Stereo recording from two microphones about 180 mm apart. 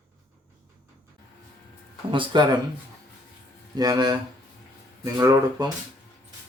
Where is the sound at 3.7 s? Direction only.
20° right (ahead or behind).